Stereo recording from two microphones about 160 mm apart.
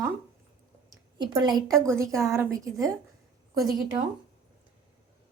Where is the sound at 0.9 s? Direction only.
25° right (ahead or behind).